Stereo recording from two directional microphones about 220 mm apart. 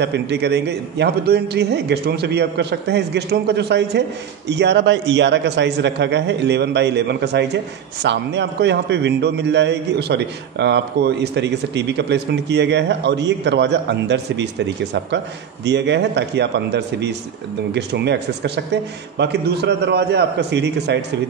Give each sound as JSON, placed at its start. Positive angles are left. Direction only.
{"t": 0.0, "sound": "a man's voice", "side_deg": -50}
{"t": 15.6, "sound": "a man's voice", "side_deg": -50}